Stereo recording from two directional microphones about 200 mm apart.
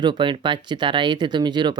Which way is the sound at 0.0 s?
25° right (ahead or behind).